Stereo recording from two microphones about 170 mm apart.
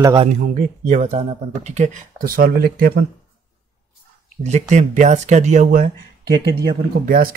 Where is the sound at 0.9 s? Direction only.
40° right (ahead or behind); by 3.0 s 60° right (ahead or behind).